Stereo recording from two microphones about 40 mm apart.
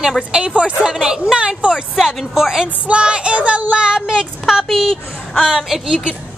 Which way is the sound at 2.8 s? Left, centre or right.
Right.